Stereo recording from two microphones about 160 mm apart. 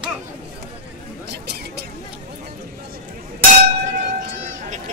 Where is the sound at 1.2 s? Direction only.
90° right.